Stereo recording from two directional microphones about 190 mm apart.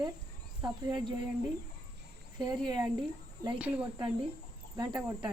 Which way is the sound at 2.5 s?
20° right (ahead or behind).